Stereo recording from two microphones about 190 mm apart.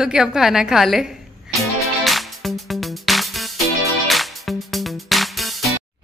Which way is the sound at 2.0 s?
Centre (ahead or behind).